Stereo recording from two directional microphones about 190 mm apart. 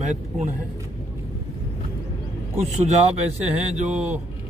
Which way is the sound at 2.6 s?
35° right (ahead or behind).